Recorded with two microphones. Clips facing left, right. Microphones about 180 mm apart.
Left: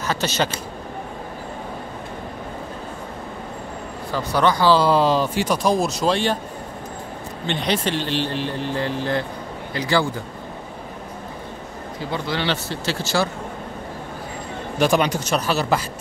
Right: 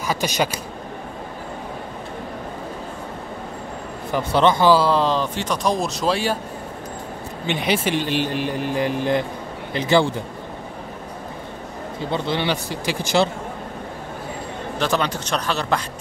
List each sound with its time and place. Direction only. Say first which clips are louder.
0.0 s speech: right 1 dB; 10° right (ahead or behind)
4.1 s speech: right 2 dB; 25° right (ahead or behind)
4.7 s speech: left 1 dB; 5° left (ahead or behind)
7.4 s speech: right 1 dB; 5° right (ahead or behind)
12.1 s speech: right 2 dB; 20° right (ahead or behind)
14.8 s speech: left 4 dB; 15° left (ahead or behind)